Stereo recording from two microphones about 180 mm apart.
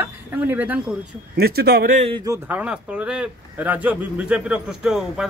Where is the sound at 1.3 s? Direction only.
60° right (ahead or behind).